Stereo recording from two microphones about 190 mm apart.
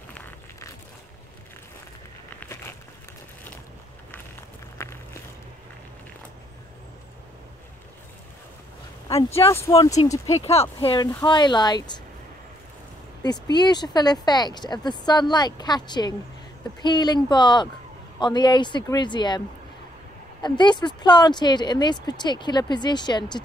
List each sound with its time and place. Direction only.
0.1 s a sound: 10° left (ahead or behind)
2.4 s crumpling: 10° left (ahead or behind)
4.8 s a sound: 15° left (ahead or behind)
9.0 s speech: 15° left (ahead or behind)
10.4 s speech: 35° left (ahead or behind)
13.2 s speech: 20° left (ahead or behind)
20.4 s speech: 25° left (ahead or behind)